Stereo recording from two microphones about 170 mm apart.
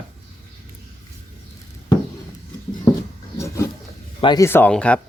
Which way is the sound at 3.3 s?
20° left (ahead or behind).